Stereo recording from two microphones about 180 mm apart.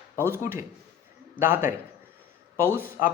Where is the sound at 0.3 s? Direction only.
15° right (ahead or behind).